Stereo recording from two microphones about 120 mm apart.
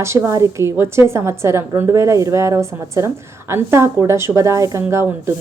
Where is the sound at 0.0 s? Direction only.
20° right (ahead or behind).